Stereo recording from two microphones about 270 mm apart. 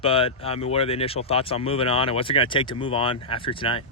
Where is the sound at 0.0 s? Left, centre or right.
Left.